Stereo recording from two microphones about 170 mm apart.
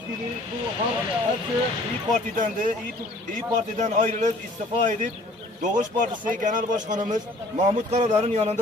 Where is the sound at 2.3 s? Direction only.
50° right (ahead or behind).